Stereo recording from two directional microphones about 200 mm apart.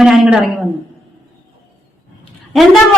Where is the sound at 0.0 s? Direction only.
5° right (ahead or behind).